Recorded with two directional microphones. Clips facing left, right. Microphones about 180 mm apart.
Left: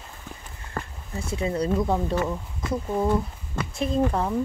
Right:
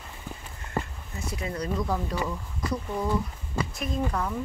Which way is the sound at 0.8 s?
10° right (ahead or behind).